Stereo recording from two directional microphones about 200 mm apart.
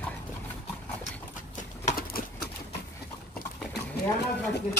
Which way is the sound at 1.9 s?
45° left (ahead or behind).